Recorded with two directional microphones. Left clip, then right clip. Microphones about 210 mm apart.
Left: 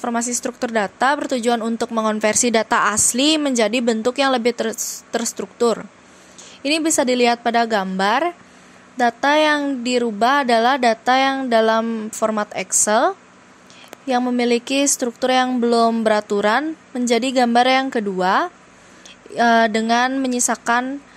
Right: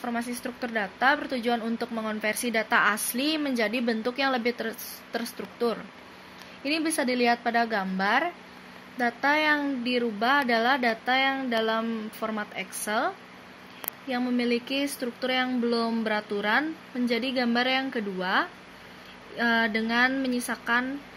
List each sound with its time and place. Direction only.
0.0 s a woman's voice: 45° left (ahead or behind)